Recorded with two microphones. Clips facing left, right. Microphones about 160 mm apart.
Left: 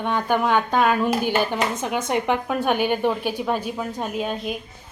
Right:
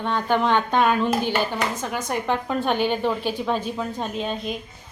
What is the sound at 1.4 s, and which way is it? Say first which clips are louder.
A woman's voice: left 2 dB; 20° left (ahead or behind).